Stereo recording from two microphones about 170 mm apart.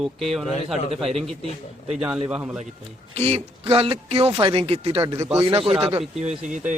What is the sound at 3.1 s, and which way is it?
Speech, 35° right (ahead or behind).